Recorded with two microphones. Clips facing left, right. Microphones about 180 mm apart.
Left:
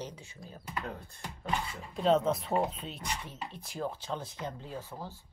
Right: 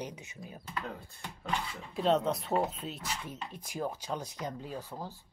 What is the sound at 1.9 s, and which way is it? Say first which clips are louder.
Speech: left 2 dB; centre (ahead or behind).